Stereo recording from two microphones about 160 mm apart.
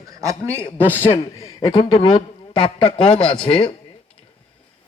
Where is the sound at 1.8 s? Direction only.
30° left (ahead or behind).